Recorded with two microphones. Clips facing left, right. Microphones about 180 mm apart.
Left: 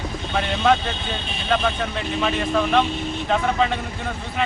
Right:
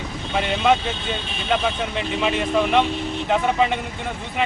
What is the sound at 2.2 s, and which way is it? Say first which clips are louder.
Speech: right 1 dB; 15° right (ahead or behind).